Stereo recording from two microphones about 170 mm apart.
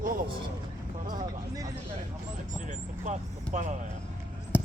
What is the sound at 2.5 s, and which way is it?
Speech, 45° right (ahead or behind).